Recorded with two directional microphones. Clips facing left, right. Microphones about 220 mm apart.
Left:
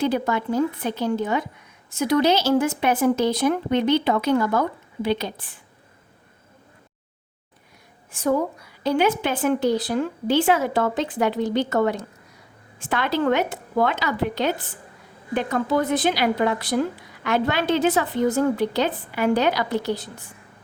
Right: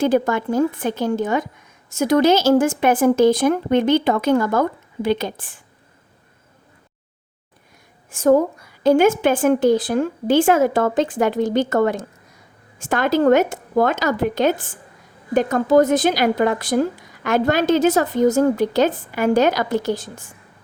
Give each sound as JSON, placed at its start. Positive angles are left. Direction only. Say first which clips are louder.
{"t": 0.0, "sound": "speech", "louder": "right 5 dB", "side_deg": -45}
{"t": 8.1, "sound": "speech", "louder": "right 7 dB", "side_deg": -45}